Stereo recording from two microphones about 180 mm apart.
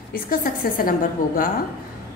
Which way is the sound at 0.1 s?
50° left (ahead or behind).